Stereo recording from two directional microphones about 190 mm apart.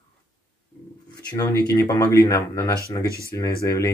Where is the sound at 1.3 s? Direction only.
20° left (ahead or behind).